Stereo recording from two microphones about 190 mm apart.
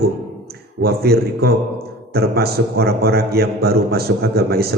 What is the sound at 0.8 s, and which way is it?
A man's voice, 55° right (ahead or behind).